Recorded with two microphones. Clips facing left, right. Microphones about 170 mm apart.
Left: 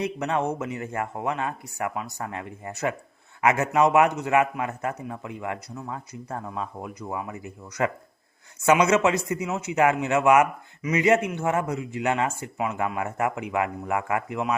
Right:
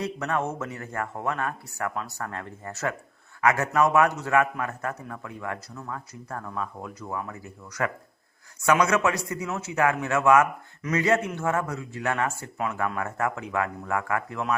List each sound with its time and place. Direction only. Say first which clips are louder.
0.0 s a man's voice: left 2 dB; 20° left (ahead or behind)